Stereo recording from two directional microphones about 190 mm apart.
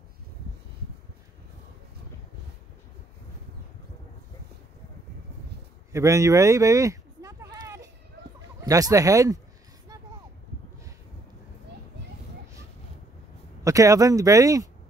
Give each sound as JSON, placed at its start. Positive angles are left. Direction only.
{"t": 5.9, "sound": "speech", "side_deg": -15}
{"t": 7.5, "sound": "a sound", "side_deg": -15}
{"t": 8.4, "sound": "speech", "side_deg": -20}
{"t": 13.7, "sound": "speech", "side_deg": -15}